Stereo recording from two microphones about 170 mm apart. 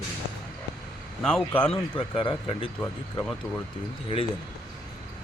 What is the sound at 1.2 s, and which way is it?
Speech, centre (ahead or behind).